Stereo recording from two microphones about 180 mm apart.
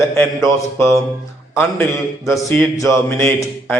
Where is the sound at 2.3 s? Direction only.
15° left (ahead or behind).